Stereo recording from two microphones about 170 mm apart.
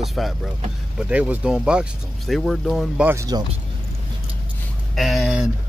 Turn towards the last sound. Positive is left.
turn(degrees=0)  # may be behind; listen again after turning